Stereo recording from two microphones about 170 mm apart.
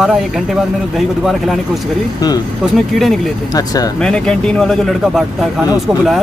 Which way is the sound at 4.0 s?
5° left (ahead or behind).